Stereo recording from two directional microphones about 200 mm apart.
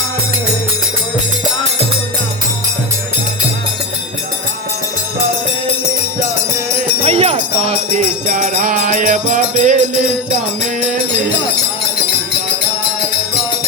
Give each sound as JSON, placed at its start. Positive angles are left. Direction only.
{"t": 7.0, "sound": "jingle bell", "side_deg": -30}
{"t": 8.3, "sound": "music", "side_deg": -40}